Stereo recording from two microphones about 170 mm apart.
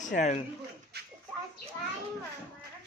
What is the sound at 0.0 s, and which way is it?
Speech, 45° left (ahead or behind).